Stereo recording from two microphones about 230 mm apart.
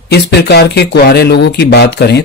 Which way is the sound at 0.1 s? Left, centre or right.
Left.